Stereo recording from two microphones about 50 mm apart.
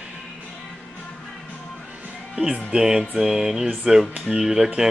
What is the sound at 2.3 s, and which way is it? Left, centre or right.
Speech, right.